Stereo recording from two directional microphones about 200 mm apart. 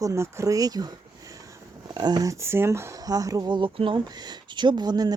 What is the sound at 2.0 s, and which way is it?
Speech, 20° right (ahead or behind).